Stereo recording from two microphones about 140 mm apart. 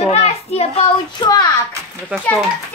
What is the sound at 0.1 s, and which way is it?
Speech, 45° left (ahead or behind).